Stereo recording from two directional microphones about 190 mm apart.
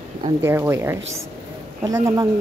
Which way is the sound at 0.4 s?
15° right (ahead or behind).